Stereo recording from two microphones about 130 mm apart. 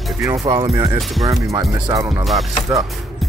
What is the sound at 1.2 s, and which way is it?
Speech, 25° right (ahead or behind).